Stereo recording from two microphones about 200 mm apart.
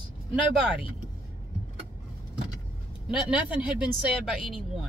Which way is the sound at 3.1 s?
5° right (ahead or behind).